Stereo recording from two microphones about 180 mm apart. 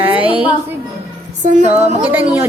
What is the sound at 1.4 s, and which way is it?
Music, 40° right (ahead or behind).